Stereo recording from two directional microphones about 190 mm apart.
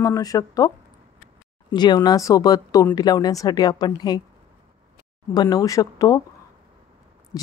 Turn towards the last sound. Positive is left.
turn(degrees=15)  # may be behind; listen again after turning